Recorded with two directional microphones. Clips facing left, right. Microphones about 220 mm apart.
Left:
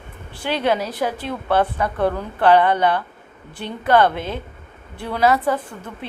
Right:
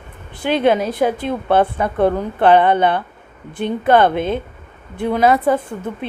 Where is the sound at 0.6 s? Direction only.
20° right (ahead or behind).